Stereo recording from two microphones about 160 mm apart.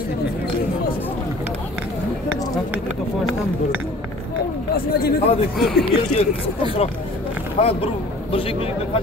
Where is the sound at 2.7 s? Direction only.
10° right (ahead or behind).